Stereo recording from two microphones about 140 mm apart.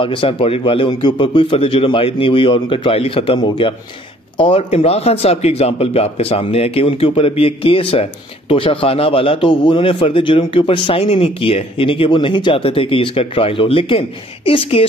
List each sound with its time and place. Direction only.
0.0 s a man's voice: 40° left (ahead or behind)